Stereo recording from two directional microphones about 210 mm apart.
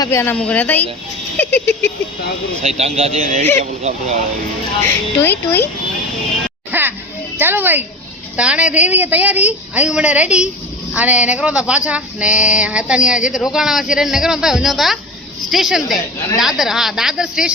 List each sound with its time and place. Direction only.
0.0 s a woman's voice: 15° left (ahead or behind)
1.5 s a sound: 5° left (ahead or behind)
2.6 s speech: 30° right (ahead or behind)
5.2 s a woman's voice: 10° left (ahead or behind)
6.7 s music: 10° right (ahead or behind)
7.3 s a woman's voice: 10° right (ahead or behind)
8.4 s a sound: 5° right (ahead or behind)